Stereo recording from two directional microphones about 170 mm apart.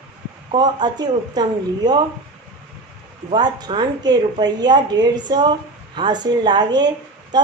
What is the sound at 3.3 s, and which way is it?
A woman's voice, 25° right (ahead or behind).